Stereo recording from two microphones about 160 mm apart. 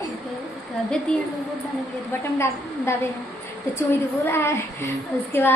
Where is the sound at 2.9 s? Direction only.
15° left (ahead or behind).